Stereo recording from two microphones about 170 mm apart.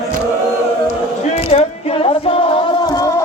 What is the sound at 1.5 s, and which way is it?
Music, 35° left (ahead or behind).